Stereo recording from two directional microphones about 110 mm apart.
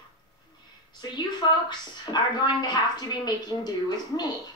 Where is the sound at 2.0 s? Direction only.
40° left (ahead or behind).